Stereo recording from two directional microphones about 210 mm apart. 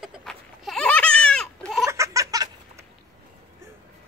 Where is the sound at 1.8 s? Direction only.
15° right (ahead or behind).